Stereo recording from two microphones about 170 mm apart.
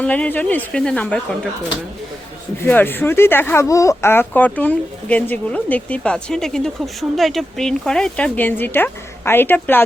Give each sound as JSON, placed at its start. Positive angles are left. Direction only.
{"t": 0.0, "sound": "speech", "side_deg": 10}
{"t": 2.6, "sound": "speech", "side_deg": 10}